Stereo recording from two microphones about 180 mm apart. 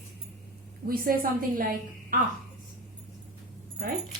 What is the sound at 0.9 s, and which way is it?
Speech, 55° right (ahead or behind).